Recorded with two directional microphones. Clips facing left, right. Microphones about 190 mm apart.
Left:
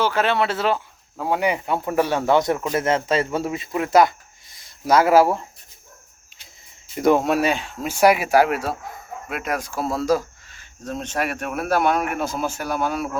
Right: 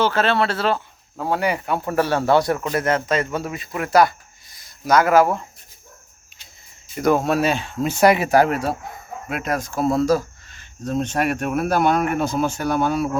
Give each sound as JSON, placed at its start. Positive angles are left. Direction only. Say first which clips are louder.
{"t": 0.0, "sound": "speech", "louder": "right 1 dB", "side_deg": 15}
{"t": 4.5, "sound": "a sound", "louder": "even", "side_deg": 25}
{"t": 6.9, "sound": "speech", "louder": "left 1 dB", "side_deg": 20}